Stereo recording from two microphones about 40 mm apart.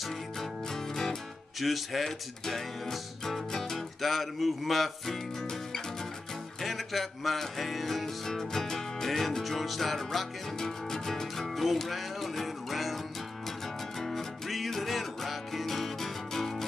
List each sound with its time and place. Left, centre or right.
1.6 s speech: centre
2.0 s speech: centre
2.9 s music: centre
6.6 s speech: centre
10.6 s music: centre